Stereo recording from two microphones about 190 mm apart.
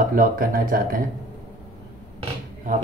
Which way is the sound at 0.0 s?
50° right (ahead or behind).